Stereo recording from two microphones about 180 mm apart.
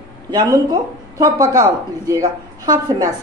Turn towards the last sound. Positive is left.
turn(degrees=-20)  # may be behind; listen again after turning